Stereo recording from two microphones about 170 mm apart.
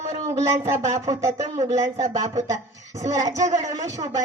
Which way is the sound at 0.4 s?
20° right (ahead or behind).